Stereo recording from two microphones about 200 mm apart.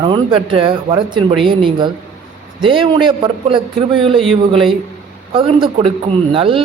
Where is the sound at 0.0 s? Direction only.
25° right (ahead or behind).